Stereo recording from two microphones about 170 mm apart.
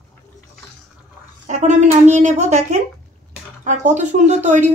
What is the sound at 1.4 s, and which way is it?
Speech, 45° right (ahead or behind).